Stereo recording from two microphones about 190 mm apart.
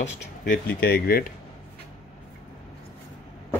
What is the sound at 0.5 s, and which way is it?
Speech, 55° left (ahead or behind).